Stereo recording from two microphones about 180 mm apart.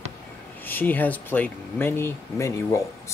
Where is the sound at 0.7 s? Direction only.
10° left (ahead or behind).